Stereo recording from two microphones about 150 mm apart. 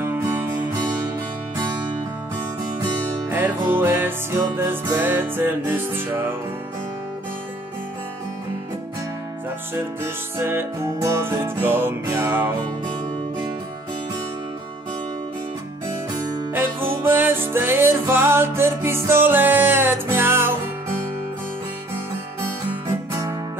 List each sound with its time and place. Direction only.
0.0 s music: 15° right (ahead or behind)
3.3 s music: 15° right (ahead or behind)
10.4 s music: 15° right (ahead or behind)
16.5 s music: 15° right (ahead or behind)